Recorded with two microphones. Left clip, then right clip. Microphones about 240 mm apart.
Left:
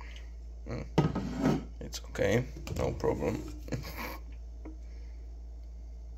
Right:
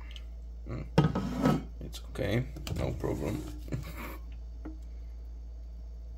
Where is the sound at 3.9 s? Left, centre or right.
Centre.